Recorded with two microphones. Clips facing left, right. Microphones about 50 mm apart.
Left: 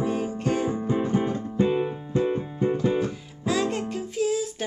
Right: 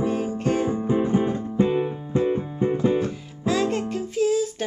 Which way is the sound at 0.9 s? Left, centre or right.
Centre.